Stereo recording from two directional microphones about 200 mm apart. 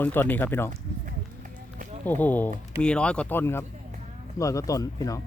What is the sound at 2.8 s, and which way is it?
Speech, 5° left (ahead or behind).